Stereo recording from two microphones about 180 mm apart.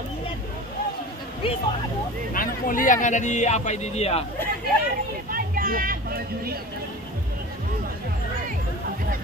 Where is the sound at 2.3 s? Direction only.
50° left (ahead or behind).